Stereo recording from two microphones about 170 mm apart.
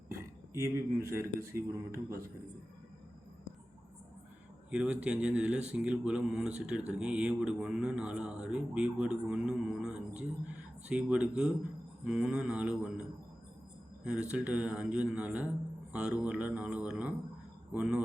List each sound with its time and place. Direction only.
0.5 s a man's voice: 15° right (ahead or behind)
4.7 s a man's voice: 5° right (ahead or behind)